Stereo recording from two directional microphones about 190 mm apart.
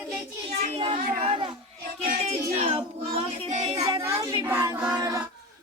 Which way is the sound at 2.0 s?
40° right (ahead or behind).